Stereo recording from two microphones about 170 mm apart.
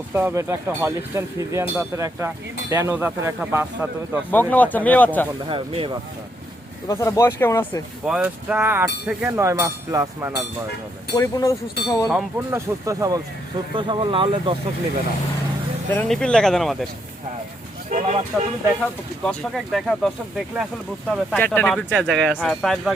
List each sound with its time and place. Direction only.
0.1 s speech: 10° right (ahead or behind)
4.3 s speech: 10° left (ahead or behind)
5.5 s speech: 30° right (ahead or behind)
6.8 s speech: 20° left (ahead or behind)
8.0 s speech: 5° right (ahead or behind)
11.1 s speech: 20° left (ahead or behind)
12.5 s speech: 20° right (ahead or behind)
15.9 s speech: 5° left (ahead or behind)
17.8 s speech: 45° right (ahead or behind)
19.2 s speech: 5° left (ahead or behind)
21.1 s speech: 10° left (ahead or behind)